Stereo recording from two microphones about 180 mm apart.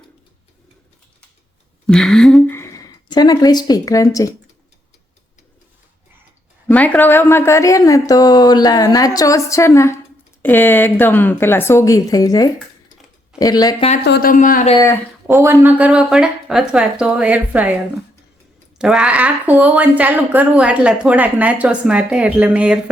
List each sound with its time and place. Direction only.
1.9 s speech: 5° left (ahead or behind)
2.6 s speech: 15° left (ahead or behind)
6.7 s speech: 10° left (ahead or behind)
14.0 s speech: 60° left (ahead or behind); by 14.7 s 45° left (ahead or behind)
15.3 s a woman's voice: 15° right (ahead or behind)
18.8 s a woman's voice: 5° right (ahead or behind)